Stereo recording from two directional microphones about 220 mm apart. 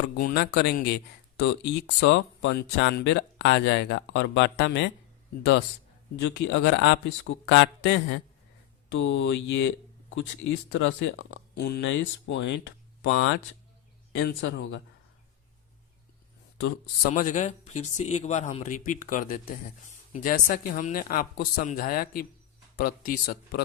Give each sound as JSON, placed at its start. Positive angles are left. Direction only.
{"t": 0.2, "sound": "speech", "side_deg": 45}
{"t": 6.1, "sound": "speech", "side_deg": 55}
{"t": 16.6, "sound": "speech", "side_deg": 50}
{"t": 17.1, "sound": "speech", "side_deg": 35}